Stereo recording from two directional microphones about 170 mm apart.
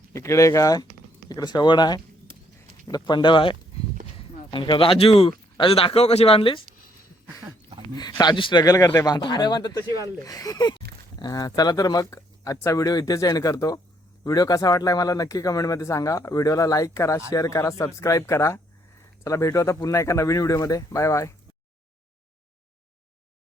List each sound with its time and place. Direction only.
0.1 s speech: 15° left (ahead or behind); by 6.6 s 30° left (ahead or behind)
7.9 s speech: 25° left (ahead or behind)